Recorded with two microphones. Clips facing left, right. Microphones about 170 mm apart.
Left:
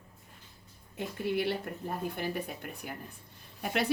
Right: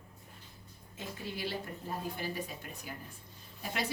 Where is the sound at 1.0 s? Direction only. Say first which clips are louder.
Left 8 dB; 60° left (ahead or behind).